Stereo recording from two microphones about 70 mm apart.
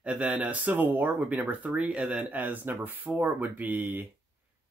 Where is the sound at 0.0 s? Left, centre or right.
Centre.